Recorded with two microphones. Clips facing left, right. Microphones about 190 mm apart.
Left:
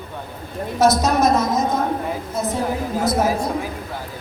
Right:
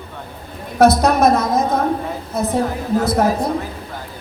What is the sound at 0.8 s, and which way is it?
A woman's voice, 60° right (ahead or behind).